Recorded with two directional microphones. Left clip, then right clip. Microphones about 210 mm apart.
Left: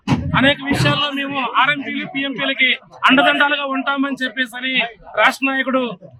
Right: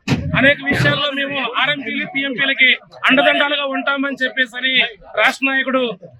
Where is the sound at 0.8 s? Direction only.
5° left (ahead or behind).